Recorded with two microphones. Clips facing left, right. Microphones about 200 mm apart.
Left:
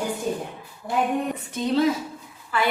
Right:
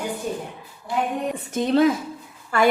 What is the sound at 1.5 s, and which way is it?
A woman's voice, 55° right (ahead or behind).